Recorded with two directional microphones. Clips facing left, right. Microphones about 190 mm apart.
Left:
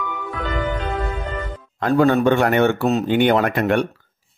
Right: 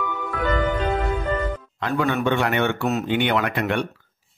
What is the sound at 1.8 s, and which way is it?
A man's voice, 40° left (ahead or behind).